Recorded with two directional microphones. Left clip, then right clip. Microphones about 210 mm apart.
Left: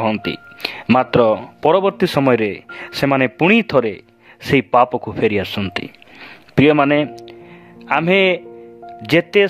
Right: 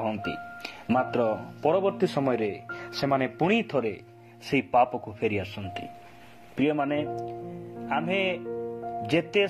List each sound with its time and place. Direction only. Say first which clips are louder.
0.0 s speech: left 10 dB; 35° left (ahead or behind)
2.1 s speech: left 11 dB; 55° left (ahead or behind)
3.6 s speech: left 12 dB; 30° left (ahead or behind)